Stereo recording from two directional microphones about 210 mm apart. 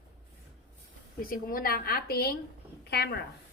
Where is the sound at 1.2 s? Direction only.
45° left (ahead or behind).